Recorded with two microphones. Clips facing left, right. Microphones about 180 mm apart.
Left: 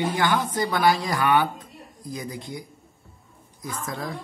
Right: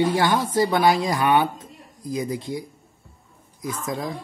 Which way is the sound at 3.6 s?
20° right (ahead or behind).